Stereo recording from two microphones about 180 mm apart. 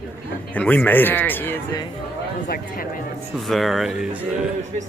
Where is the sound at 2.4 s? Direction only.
55° left (ahead or behind).